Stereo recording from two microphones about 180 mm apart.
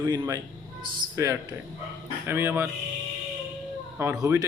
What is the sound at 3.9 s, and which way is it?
Speech, 15° right (ahead or behind).